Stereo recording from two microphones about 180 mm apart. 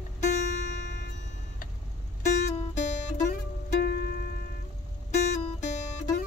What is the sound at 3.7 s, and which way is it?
Music, 60° left (ahead or behind).